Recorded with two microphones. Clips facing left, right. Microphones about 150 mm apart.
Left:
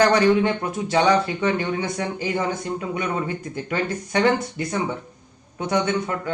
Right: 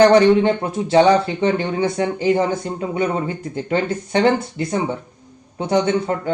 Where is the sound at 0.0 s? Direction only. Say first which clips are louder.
Right 5 dB; 30° right (ahead or behind).